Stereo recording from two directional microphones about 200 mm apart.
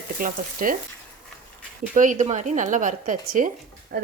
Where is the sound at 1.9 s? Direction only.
40° right (ahead or behind).